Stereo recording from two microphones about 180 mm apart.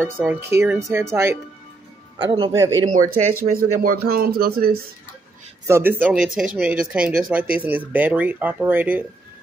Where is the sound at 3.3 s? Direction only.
45° right (ahead or behind).